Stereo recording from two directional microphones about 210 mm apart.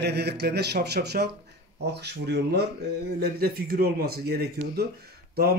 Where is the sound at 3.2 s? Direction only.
45° right (ahead or behind).